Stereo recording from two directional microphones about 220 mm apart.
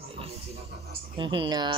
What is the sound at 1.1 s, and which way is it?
Speech, 20° right (ahead or behind).